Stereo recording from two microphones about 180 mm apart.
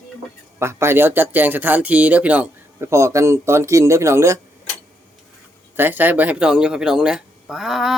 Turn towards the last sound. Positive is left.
turn(degrees=0)  # may be behind; listen again after turning